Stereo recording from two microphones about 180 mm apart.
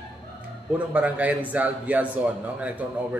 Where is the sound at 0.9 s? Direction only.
10° right (ahead or behind).